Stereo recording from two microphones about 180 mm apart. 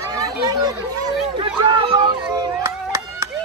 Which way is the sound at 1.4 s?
30° right (ahead or behind).